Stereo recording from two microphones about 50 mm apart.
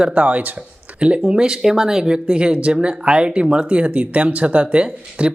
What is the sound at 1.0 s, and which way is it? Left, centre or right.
Speech, right.